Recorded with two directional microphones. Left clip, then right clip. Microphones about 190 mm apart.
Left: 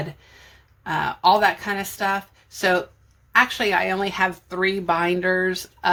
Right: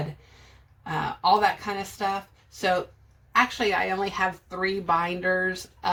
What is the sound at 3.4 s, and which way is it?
Speech, 35° left (ahead or behind).